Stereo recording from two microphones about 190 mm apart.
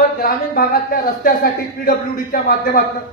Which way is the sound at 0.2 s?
50° left (ahead or behind).